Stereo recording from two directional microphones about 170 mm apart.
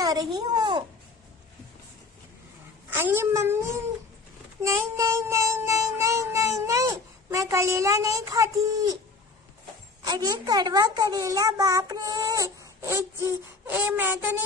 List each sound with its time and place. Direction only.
0.0 s a woman's voice: 25° right (ahead or behind)
2.9 s speech: 10° right (ahead or behind)
4.6 s music: 15° right (ahead or behind)
10.0 s a woman's voice: 20° right (ahead or behind)